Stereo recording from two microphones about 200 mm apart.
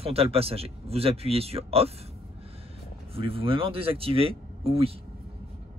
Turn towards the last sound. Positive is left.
turn(degrees=-30)  # may be behind; listen again after turning